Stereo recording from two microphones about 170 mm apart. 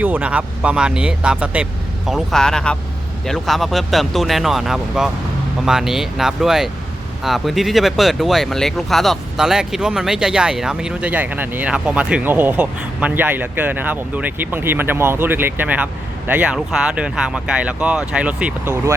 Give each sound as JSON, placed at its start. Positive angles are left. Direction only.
{"t": 0.0, "sound": "speech", "side_deg": -10}